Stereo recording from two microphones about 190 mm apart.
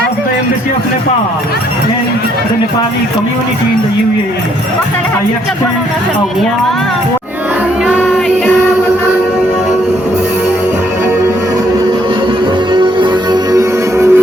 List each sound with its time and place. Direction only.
12.7 s music: 25° right (ahead or behind)